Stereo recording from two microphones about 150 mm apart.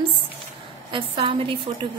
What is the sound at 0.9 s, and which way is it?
Speech, 35° right (ahead or behind).